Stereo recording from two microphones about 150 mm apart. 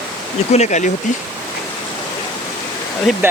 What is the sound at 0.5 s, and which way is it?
Speech, 50° left (ahead or behind).